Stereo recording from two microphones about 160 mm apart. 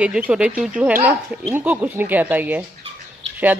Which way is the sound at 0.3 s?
5° right (ahead or behind).